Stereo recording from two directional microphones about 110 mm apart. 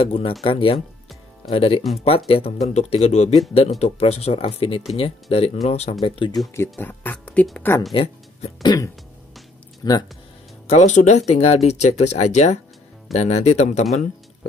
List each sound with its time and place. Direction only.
0.0 s speech: 60° left (ahead or behind)
6.8 s speech: 15° left (ahead or behind)
7.9 s speech: 60° left (ahead or behind)
8.6 s throat clearing: 30° left (ahead or behind)
10.7 s speech: 85° left